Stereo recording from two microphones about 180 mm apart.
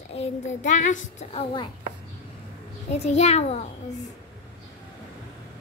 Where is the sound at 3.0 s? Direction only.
35° left (ahead or behind).